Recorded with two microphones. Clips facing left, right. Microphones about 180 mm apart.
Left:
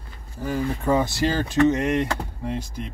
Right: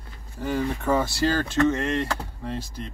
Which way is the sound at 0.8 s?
15° left (ahead or behind).